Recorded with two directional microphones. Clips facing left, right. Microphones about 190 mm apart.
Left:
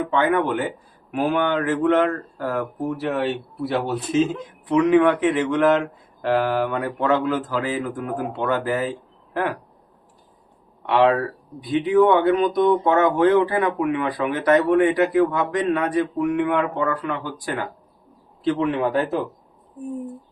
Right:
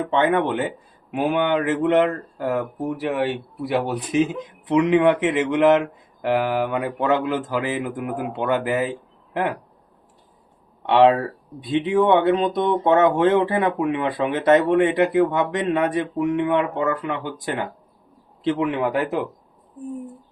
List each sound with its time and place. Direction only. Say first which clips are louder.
0.1 s speech: right 1 dB; 25° right (ahead or behind)
10.8 s speech: right 2 dB; 25° right (ahead or behind)